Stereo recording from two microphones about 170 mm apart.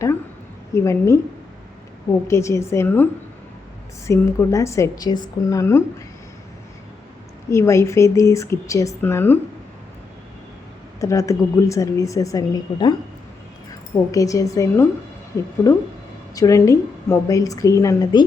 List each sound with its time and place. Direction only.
0.7 s a woman's voice: 15° left (ahead or behind)
2.2 s a woman's voice: 15° left (ahead or behind)
7.5 s a woman's voice: 15° left (ahead or behind)
11.0 s a woman's voice: 20° left (ahead or behind)
14.1 s a woman's voice: 20° left (ahead or behind)
16.3 s a woman's voice: 20° left (ahead or behind)